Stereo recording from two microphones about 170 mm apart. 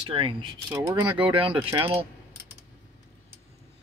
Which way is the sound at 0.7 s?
15° right (ahead or behind).